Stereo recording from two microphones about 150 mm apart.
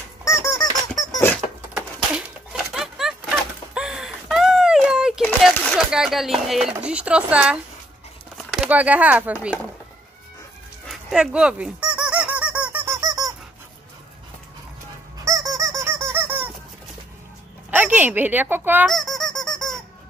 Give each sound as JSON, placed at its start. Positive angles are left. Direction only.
{"t": 0.2, "sound": "squeak", "side_deg": 20}
{"t": 1.7, "sound": "a sound", "side_deg": -5}
{"t": 8.6, "sound": "speech", "side_deg": -10}
{"t": 10.9, "sound": "squeak", "side_deg": -5}
{"t": 13.0, "sound": "squeak", "side_deg": -25}
{"t": 15.2, "sound": "squeak", "side_deg": -20}
{"t": 17.6, "sound": "speech", "side_deg": -10}
{"t": 18.9, "sound": "squeak", "side_deg": 0}